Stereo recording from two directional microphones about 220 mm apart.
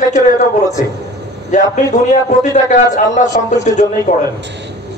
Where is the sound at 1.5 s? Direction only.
35° left (ahead or behind).